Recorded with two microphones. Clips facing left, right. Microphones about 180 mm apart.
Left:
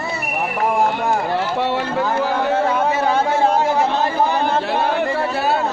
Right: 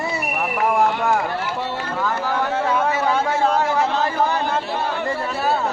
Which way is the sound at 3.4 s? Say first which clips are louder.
Left 1 dB; 30° left (ahead or behind).